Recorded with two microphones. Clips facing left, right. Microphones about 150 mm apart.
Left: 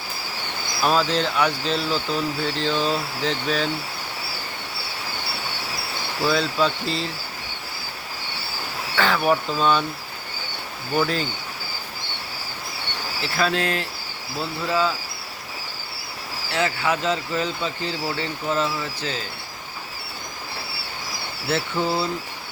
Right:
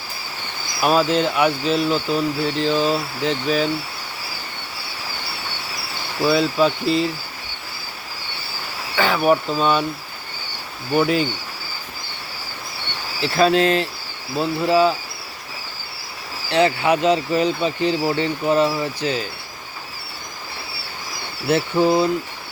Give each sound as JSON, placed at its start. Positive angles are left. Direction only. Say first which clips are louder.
{"t": 0.8, "sound": "speech", "louder": "right 4 dB", "side_deg": -10}
{"t": 6.2, "sound": "speech", "louder": "right 4 dB", "side_deg": -5}
{"t": 9.0, "sound": "speech", "louder": "right 3 dB", "side_deg": -5}
{"t": 13.2, "sound": "speech", "louder": "right 7 dB", "side_deg": -20}
{"t": 16.5, "sound": "speech", "louder": "right 6 dB", "side_deg": -20}
{"t": 21.5, "sound": "speech", "louder": "right 7 dB", "side_deg": -15}